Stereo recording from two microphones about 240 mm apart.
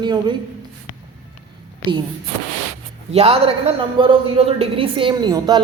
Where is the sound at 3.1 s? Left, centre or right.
Right.